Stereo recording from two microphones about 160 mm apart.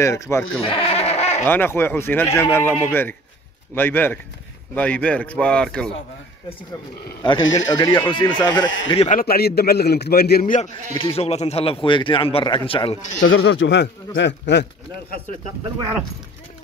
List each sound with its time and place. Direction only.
0.0 s speech: 15° left (ahead or behind)
0.6 s bleat: 35° left (ahead or behind)
1.4 s speech: 15° left (ahead or behind)
7.2 s speech: 25° left (ahead or behind)
9.1 s a man's voice: 70° left (ahead or behind)
11.0 s speech: 35° left (ahead or behind)
13.4 s a man's voice: 90° left